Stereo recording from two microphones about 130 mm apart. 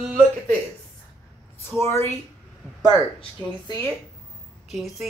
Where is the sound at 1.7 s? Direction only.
20° left (ahead or behind).